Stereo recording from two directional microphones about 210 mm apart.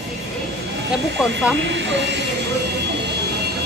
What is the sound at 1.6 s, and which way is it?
Speech, 55° right (ahead or behind).